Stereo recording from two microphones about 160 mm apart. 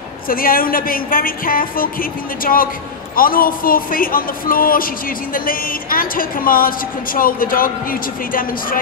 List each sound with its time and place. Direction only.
0.3 s a woman's voice: 65° left (ahead or behind)